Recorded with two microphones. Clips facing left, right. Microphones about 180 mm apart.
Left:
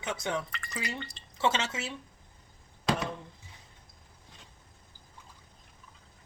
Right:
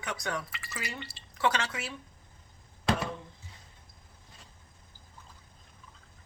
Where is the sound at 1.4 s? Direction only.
20° left (ahead or behind).